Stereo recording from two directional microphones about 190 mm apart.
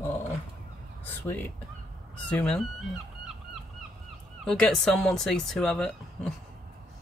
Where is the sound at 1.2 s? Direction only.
10° left (ahead or behind).